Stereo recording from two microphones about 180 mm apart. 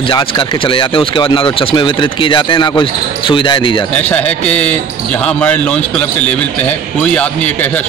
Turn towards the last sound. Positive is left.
turn(degrees=5)  # may be behind; listen again after turning